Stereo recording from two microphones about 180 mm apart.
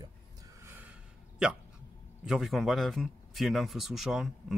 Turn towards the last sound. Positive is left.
turn(degrees=0)  # may be behind; listen again after turning